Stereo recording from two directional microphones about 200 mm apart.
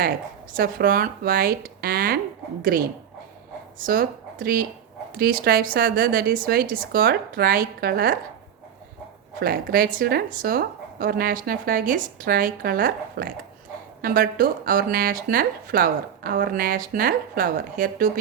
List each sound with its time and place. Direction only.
0.5 s speech: 45° right (ahead or behind)
3.8 s speech: 45° right (ahead or behind)
9.4 s speech: 50° right (ahead or behind)